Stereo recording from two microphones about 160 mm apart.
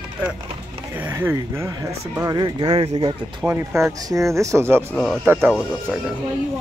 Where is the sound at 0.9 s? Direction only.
15° right (ahead or behind); by 3.2 s 35° right (ahead or behind).